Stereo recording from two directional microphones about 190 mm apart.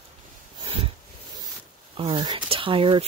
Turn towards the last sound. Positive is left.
turn(degrees=-25)  # may be behind; listen again after turning